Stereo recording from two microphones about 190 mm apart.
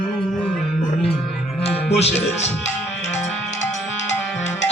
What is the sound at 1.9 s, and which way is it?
Speech, 35° left (ahead or behind).